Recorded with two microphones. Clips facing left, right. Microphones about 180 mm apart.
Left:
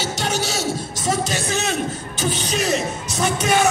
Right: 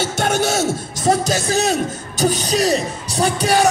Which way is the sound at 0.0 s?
55° right (ahead or behind).